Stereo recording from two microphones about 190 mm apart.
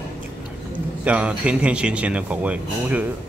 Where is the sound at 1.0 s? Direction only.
5° right (ahead or behind).